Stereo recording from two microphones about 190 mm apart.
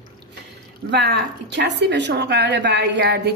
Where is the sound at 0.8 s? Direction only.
65° right (ahead or behind).